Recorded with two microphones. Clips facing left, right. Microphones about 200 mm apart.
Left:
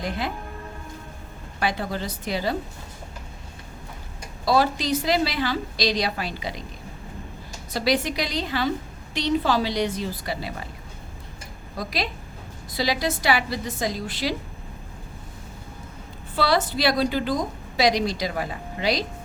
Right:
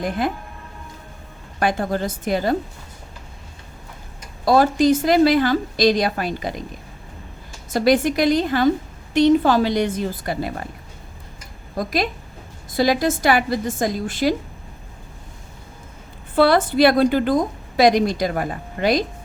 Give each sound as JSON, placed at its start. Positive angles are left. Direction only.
{"t": 0.0, "sound": "a woman's voice", "side_deg": -50}
{"t": 1.5, "sound": "a woman's voice", "side_deg": -50}
{"t": 4.4, "sound": "a woman's voice", "side_deg": -50}
{"t": 7.7, "sound": "a woman's voice", "side_deg": -50}
{"t": 11.8, "sound": "a woman's voice", "side_deg": -50}
{"t": 16.3, "sound": "a woman's voice", "side_deg": -55}